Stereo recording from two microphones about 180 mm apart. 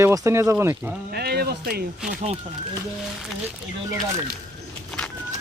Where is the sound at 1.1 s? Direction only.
60° right (ahead or behind).